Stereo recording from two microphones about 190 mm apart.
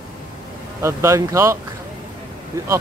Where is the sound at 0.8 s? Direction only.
15° right (ahead or behind).